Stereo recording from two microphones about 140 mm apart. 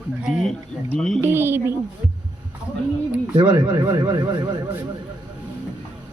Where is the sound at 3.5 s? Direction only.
20° right (ahead or behind).